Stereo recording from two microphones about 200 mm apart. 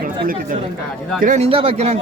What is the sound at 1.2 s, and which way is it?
Speech, 35° right (ahead or behind).